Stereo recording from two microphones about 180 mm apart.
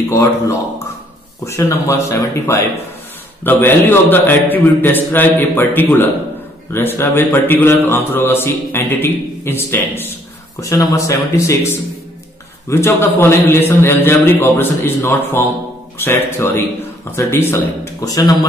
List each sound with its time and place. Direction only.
0.1 s a man's voice: 15° left (ahead or behind)